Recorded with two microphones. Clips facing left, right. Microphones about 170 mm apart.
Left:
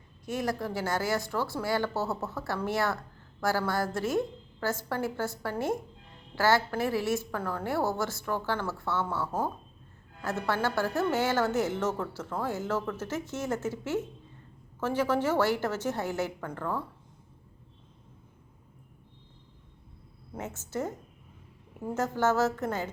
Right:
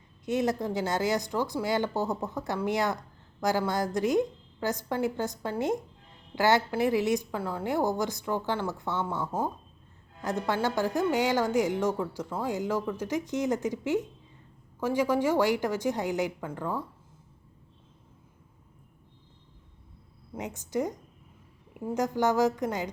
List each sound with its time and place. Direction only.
0.3 s a woman's voice: 20° right (ahead or behind)
20.3 s a woman's voice: 15° right (ahead or behind)
21.9 s a woman's voice: 15° right (ahead or behind)